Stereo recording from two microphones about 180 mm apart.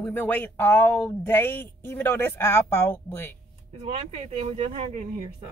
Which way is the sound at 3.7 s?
35° right (ahead or behind).